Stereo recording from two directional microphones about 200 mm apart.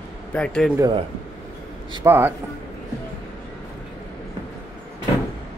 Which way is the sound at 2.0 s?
10° right (ahead or behind).